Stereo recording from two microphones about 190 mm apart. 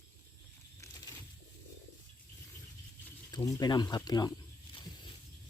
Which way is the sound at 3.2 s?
20° left (ahead or behind).